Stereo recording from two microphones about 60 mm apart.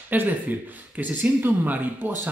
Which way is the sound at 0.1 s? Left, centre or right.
Right.